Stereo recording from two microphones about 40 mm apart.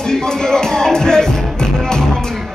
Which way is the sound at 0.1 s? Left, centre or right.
Centre.